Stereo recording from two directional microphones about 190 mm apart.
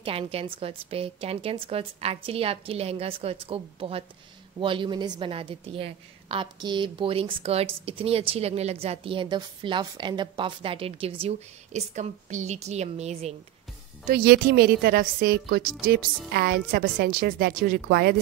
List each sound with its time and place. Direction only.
0.0 s a woman's voice: 30° right (ahead or behind)
14.0 s a woman's voice: 55° right (ahead or behind)